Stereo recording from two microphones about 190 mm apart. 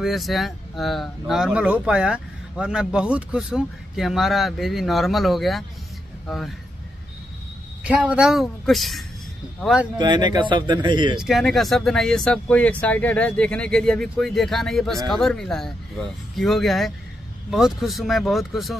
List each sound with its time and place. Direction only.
0.0 s speech: centre (ahead or behind)
7.8 s speech: 5° right (ahead or behind)
9.9 s speech: 25° right (ahead or behind)
11.1 s speech: centre (ahead or behind)